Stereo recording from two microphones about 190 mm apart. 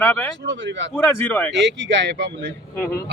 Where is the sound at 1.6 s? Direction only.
70° right (ahead or behind).